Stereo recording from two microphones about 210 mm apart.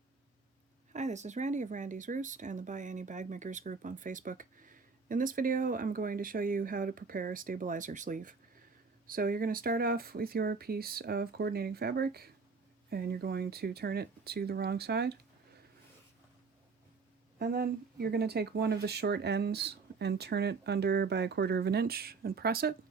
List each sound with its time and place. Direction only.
0.9 s speech: 35° right (ahead or behind); by 15.2 s 50° right (ahead or behind)
17.4 s speech: 45° right (ahead or behind)